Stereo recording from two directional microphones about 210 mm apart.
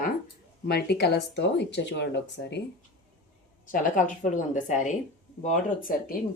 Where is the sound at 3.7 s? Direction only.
40° left (ahead or behind).